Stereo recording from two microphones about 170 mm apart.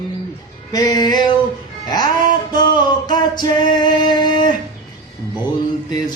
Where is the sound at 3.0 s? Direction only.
25° left (ahead or behind).